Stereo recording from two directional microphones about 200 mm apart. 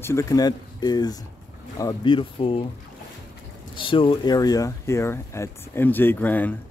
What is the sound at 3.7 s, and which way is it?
Speech, 25° left (ahead or behind).